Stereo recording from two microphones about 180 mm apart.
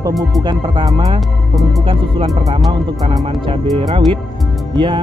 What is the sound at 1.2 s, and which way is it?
Speech, centre (ahead or behind).